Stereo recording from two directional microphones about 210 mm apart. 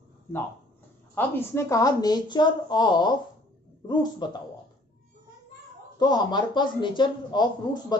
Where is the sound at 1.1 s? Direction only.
10° left (ahead or behind).